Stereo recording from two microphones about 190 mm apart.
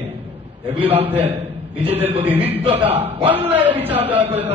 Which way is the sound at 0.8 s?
10° right (ahead or behind).